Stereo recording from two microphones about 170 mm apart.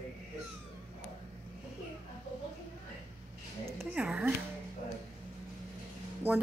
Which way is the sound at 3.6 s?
10° right (ahead or behind).